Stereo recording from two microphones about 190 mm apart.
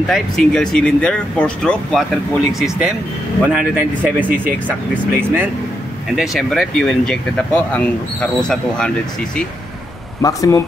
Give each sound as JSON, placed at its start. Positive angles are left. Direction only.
{"t": 0.1, "sound": "speech", "side_deg": 5}
{"t": 10.2, "sound": "speech", "side_deg": 15}